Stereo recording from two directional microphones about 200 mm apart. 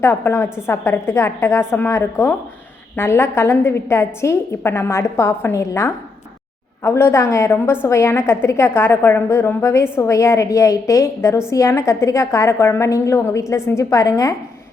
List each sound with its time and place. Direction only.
0.0 s a woman's voice: 10° left (ahead or behind)